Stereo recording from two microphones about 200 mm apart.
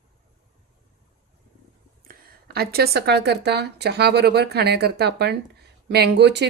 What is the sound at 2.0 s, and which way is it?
Speech, 50° right (ahead or behind).